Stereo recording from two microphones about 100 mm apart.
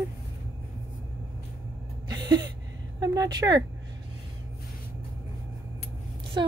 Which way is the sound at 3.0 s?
40° right (ahead or behind).